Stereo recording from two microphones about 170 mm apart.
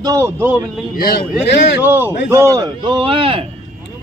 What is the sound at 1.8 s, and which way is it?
A man's voice, 10° right (ahead or behind).